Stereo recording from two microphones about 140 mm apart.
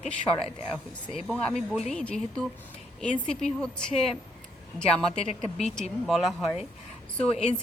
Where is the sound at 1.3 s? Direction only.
5° left (ahead or behind).